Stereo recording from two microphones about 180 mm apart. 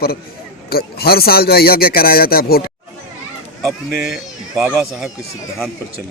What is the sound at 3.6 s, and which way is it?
Speech, centre (ahead or behind).